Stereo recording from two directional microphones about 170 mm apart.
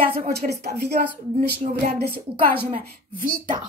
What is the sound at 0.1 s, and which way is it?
Speech, 70° right (ahead or behind).